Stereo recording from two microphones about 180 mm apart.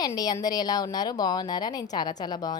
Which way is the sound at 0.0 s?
20° left (ahead or behind).